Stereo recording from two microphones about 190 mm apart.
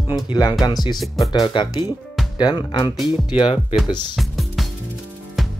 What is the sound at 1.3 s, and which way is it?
Speech, 25° left (ahead or behind).